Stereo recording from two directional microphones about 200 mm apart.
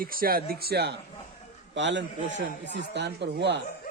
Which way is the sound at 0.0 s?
45° right (ahead or behind).